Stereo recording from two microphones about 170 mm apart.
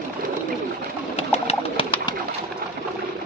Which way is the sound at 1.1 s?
35° left (ahead or behind).